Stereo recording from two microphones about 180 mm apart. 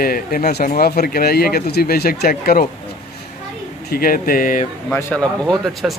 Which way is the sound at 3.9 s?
55° left (ahead or behind).